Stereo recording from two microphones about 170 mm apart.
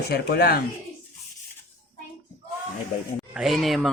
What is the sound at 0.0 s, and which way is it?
Speech, 70° left (ahead or behind).